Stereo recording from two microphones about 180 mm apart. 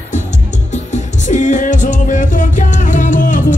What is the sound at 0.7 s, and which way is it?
Music, 40° left (ahead or behind).